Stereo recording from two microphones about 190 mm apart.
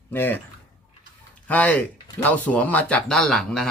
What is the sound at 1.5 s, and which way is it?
Speech, 10° left (ahead or behind).